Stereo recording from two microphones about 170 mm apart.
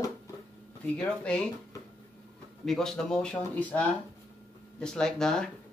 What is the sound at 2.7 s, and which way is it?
Speech, 5° left (ahead or behind).